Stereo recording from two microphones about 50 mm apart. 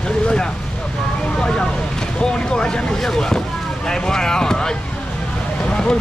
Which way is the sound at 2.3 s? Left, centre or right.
Centre.